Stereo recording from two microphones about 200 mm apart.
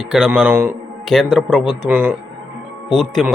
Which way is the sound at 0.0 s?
5° right (ahead or behind).